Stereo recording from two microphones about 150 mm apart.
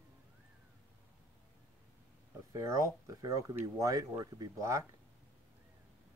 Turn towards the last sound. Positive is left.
turn(degrees=-20)  # may be behind; listen again after turning